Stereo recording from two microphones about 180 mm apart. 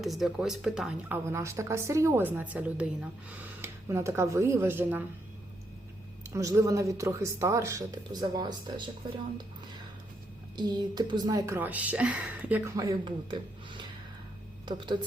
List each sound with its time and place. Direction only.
0.0 s speech: centre (ahead or behind)
6.3 s speech: 15° right (ahead or behind)
10.6 s speech: 25° right (ahead or behind)
12.7 s speech: 20° right (ahead or behind)